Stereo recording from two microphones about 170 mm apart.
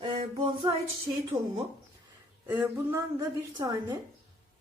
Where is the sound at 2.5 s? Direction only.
15° right (ahead or behind).